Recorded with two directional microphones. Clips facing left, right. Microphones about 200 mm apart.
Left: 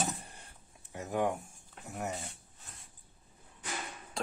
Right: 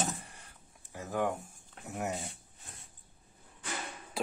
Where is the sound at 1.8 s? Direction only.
5° right (ahead or behind).